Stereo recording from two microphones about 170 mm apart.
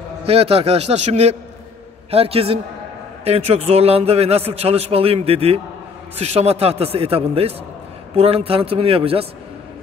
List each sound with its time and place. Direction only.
0.3 s a man's voice: 35° right (ahead or behind)